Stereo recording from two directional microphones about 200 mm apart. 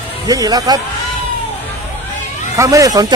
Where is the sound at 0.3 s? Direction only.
20° right (ahead or behind).